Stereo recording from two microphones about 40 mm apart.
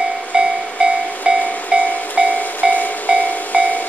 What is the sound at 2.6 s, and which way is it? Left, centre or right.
Train, centre.